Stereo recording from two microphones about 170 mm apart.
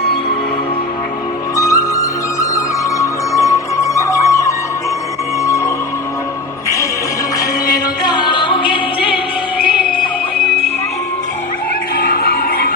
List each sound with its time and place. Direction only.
1.5 s music: 20° left (ahead or behind)
8.0 s music: 25° left (ahead or behind)
11.9 s music: 60° left (ahead or behind)